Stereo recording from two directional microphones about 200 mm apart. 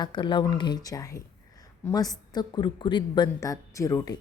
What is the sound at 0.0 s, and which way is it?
Speech, 25° left (ahead or behind).